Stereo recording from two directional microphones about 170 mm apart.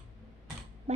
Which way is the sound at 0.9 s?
40° right (ahead or behind).